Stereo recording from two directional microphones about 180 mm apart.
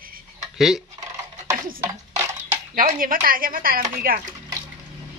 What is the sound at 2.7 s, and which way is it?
Speech, 50° right (ahead or behind).